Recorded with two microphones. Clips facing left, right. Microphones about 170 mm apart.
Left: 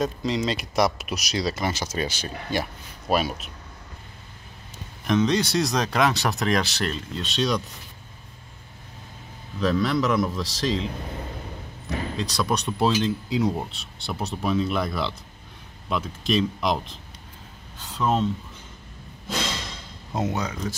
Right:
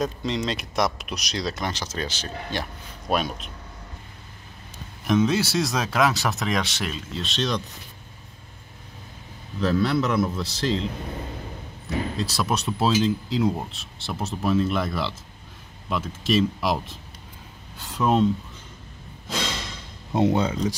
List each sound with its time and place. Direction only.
0.0 s speech: centre (ahead or behind)
5.0 s speech: 5° right (ahead or behind)
9.6 s speech: centre (ahead or behind)
12.2 s speech: 5° right (ahead or behind)
17.7 s a sound: 10° right (ahead or behind)
20.2 s speech: 30° right (ahead or behind)